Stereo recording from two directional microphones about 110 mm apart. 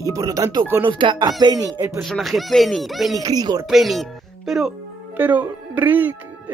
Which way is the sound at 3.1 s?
35° right (ahead or behind).